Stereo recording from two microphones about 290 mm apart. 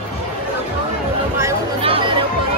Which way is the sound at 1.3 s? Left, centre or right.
Centre.